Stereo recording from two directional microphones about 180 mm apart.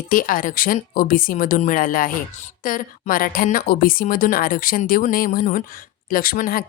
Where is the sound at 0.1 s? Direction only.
50° left (ahead or behind).